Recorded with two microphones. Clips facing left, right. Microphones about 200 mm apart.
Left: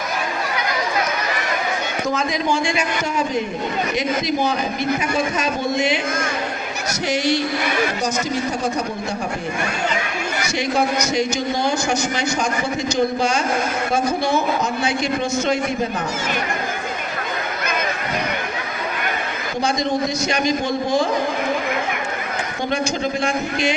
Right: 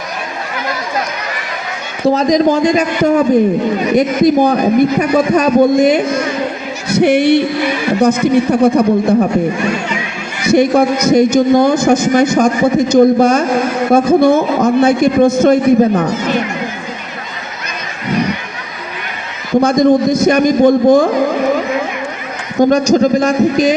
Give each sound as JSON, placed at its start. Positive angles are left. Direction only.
{"t": 2.0, "sound": "a man's voice", "side_deg": -35}
{"t": 3.0, "sound": "a man's voice", "side_deg": -60}
{"t": 10.4, "sound": "a man's voice", "side_deg": -55}
{"t": 19.5, "sound": "a man's voice", "side_deg": -55}
{"t": 22.6, "sound": "a man's voice", "side_deg": -40}